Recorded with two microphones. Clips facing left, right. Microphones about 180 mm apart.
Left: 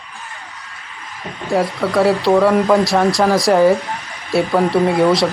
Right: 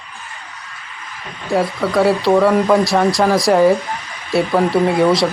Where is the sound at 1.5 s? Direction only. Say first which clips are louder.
Even; centre (ahead or behind).